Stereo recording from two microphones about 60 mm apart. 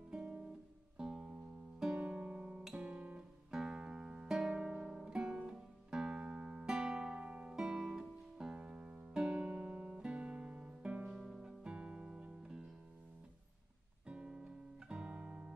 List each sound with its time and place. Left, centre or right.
0.1 s guitar: centre
0.9 s music: centre
3.5 s music: centre
7.5 s music: centre
11.1 s music: centre
14.0 s music: centre